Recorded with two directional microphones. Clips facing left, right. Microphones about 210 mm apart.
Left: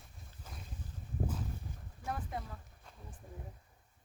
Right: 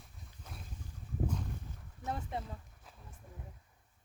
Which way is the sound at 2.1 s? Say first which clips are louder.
Right 1 dB; 25° right (ahead or behind).